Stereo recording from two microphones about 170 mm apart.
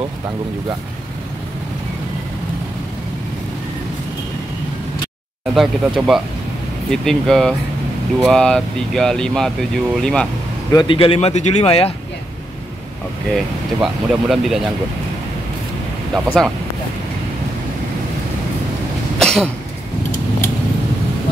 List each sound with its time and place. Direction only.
5.5 s speech: centre (ahead or behind)
10.7 s speech: 25° left (ahead or behind)
13.3 s speech: centre (ahead or behind)
16.3 s speech: 5° left (ahead or behind)
19.1 s cough: 5° left (ahead or behind)